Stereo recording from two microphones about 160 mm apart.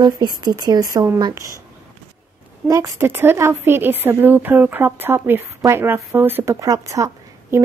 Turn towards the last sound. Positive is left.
turn(degrees=-20)  # may be behind; listen again after turning